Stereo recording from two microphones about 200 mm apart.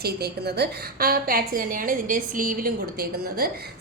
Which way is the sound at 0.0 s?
50° right (ahead or behind).